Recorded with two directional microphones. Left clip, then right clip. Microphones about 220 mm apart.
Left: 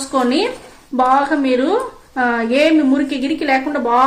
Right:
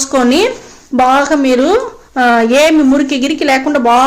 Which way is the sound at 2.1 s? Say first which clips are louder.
Right 7 dB; 40° right (ahead or behind).